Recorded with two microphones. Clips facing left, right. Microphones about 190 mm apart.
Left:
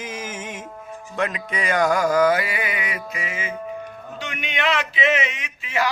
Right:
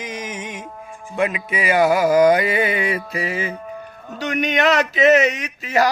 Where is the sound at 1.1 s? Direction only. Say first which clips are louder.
Right 4 dB; 10° right (ahead or behind); by 3.5 s 35° right (ahead or behind).